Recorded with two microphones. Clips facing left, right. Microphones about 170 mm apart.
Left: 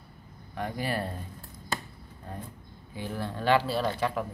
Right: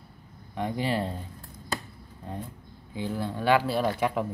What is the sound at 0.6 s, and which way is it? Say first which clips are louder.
Speech: right 3 dB; 20° right (ahead or behind).